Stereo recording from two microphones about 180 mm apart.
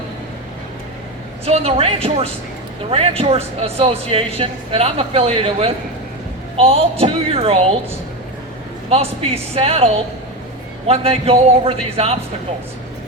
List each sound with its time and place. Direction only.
1.5 s a man's voice: 35° right (ahead or behind)
8.9 s a man's voice: 35° right (ahead or behind)